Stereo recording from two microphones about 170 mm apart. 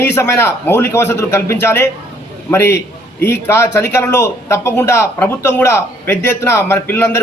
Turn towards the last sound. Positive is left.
turn(degrees=15)  # may be behind; listen again after turning